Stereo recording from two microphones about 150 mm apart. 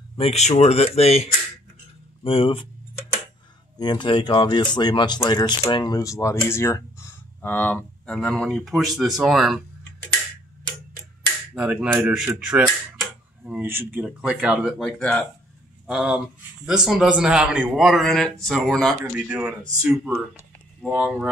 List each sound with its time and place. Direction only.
0.2 s speech: 45° left (ahead or behind)
3.7 s speech: 30° left (ahead or behind); by 9.6 s centre (ahead or behind)
11.5 s speech: 5° right (ahead or behind)
14.8 s speech: 5° left (ahead or behind)
15.9 s speech: 5° right (ahead or behind)
19.1 s speech: 10° right (ahead or behind)
20.9 s speech: 5° right (ahead or behind)